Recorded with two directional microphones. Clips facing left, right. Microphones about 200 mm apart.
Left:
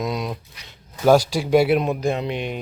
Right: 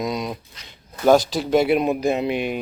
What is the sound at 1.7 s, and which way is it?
Speech, 5° right (ahead or behind).